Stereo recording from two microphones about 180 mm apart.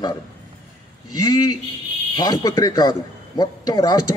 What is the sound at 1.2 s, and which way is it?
A man's voice, 20° left (ahead or behind).